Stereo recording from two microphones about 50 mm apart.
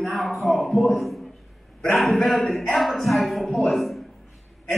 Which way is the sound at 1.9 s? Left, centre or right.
Centre.